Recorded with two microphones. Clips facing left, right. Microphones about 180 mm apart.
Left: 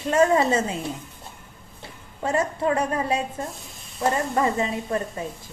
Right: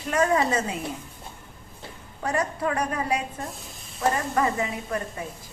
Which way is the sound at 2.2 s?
25° left (ahead or behind).